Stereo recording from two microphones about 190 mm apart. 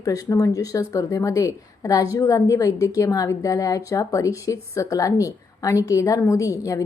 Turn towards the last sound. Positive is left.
turn(degrees=15)  # may be behind; listen again after turning